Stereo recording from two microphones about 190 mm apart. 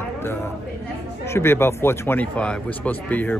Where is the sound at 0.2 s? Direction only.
10° left (ahead or behind).